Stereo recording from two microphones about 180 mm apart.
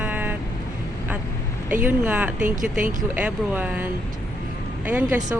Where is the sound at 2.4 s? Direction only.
45° right (ahead or behind).